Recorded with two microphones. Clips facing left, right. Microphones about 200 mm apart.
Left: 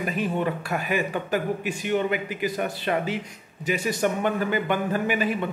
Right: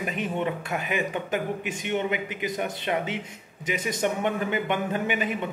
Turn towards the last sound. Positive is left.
turn(degrees=-20)  # may be behind; listen again after turning